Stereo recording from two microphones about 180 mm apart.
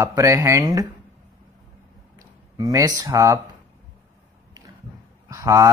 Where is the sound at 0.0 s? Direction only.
15° right (ahead or behind).